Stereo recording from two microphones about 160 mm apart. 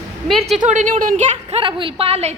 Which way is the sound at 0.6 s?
50° right (ahead or behind).